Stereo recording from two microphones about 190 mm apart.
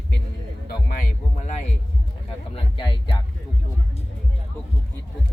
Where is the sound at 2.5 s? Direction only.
25° left (ahead or behind).